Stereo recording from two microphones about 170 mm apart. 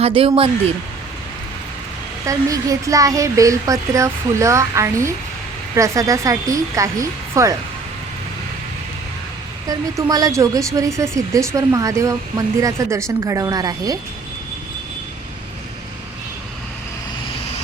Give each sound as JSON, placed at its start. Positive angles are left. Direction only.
{"t": 0.0, "sound": "speech", "side_deg": -35}
{"t": 2.2, "sound": "speech", "side_deg": -20}
{"t": 9.6, "sound": "speech", "side_deg": -20}